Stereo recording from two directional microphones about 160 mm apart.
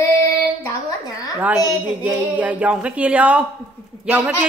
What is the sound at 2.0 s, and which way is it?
Speech, 10° right (ahead or behind).